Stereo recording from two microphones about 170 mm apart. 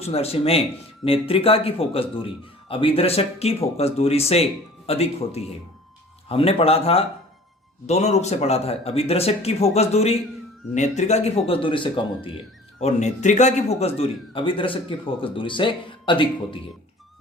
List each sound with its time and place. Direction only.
0.0 s speech: 35° left (ahead or behind)
12.8 s speech: 45° left (ahead or behind)